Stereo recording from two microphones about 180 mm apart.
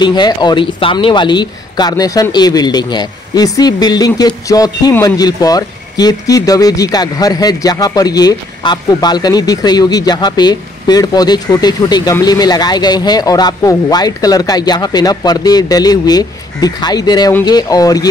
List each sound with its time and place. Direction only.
0.0 s speech: 25° left (ahead or behind)